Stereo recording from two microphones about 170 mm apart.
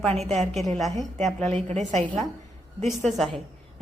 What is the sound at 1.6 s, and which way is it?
Speech, 40° right (ahead or behind).